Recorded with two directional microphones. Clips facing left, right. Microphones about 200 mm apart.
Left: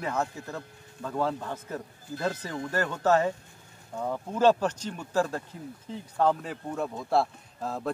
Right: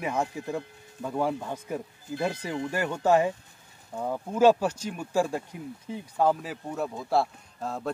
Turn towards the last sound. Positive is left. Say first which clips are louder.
# even
turn(degrees=0)  # may be behind; listen again after turning